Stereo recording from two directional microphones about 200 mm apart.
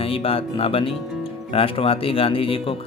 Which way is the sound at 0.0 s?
30° left (ahead or behind).